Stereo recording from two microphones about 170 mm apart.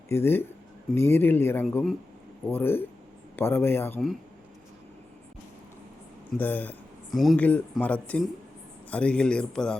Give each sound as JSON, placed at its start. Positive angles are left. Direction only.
{"t": 0.1, "sound": "speech", "side_deg": 15}
{"t": 1.6, "sound": "speech", "side_deg": 0}
{"t": 2.5, "sound": "speech", "side_deg": 10}
{"t": 6.3, "sound": "speech", "side_deg": 10}